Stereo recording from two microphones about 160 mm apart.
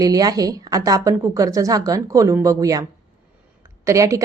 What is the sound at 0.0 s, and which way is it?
Speech, 25° right (ahead or behind).